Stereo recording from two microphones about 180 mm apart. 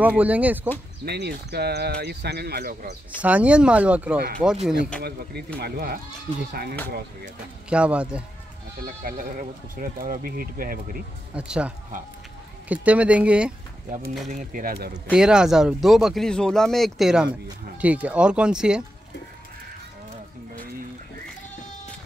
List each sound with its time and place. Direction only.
0.0 s speech: 10° right (ahead or behind)
1.0 s speech: 65° right (ahead or behind)
3.2 s speech: 10° right (ahead or behind)
5.0 s speech: 60° right (ahead or behind)
7.7 s speech: 5° right (ahead or behind)
8.8 s speech: 50° right (ahead or behind)
11.3 s speech: 5° right (ahead or behind)
14.3 s speech: 50° right (ahead or behind)
15.1 s speech: 5° right (ahead or behind)